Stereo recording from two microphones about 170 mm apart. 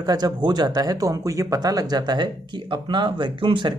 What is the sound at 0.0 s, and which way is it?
Speech, 25° right (ahead or behind).